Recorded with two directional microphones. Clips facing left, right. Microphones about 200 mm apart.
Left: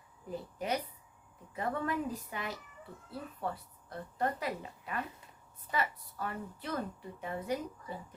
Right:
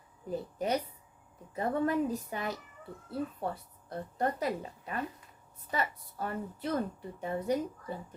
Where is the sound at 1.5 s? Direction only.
35° right (ahead or behind).